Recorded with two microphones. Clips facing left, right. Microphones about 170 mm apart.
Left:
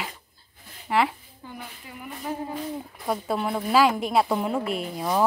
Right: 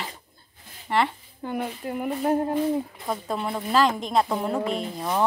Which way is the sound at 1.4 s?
55° right (ahead or behind).